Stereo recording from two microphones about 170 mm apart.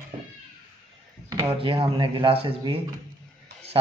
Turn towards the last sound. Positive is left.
turn(degrees=-30)  # may be behind; listen again after turning